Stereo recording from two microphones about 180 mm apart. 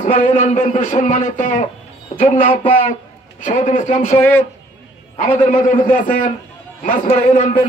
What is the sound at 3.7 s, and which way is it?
Speech, 45° left (ahead or behind).